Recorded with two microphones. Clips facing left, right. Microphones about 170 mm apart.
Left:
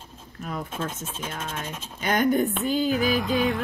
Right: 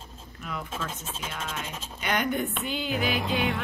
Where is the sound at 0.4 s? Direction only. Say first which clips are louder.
Left 4 dB; 40° left (ahead or behind).